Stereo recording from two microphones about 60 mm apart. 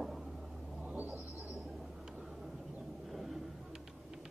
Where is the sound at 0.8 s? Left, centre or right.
Right.